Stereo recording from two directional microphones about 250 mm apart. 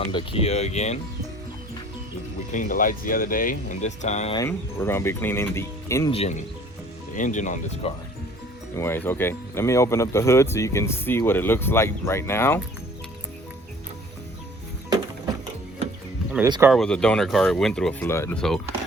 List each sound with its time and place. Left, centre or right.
0.1 s speech: centre
2.5 s speech: left
4.4 s speech: centre
6.1 s speech: left
8.7 s speech: centre
16.5 s speech: centre
16.7 s speech: centre